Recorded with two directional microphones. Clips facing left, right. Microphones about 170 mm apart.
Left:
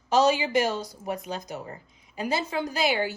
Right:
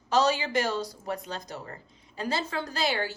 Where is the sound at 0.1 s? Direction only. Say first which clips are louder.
Left 3 dB; 20° left (ahead or behind).